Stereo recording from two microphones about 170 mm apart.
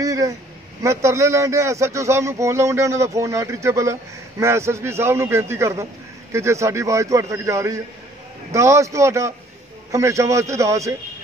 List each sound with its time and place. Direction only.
0.0 s a man's voice: 20° right (ahead or behind)